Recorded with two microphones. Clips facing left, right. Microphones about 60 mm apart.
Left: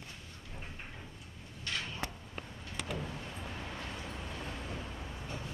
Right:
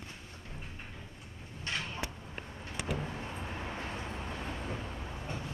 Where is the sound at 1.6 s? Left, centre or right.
Right.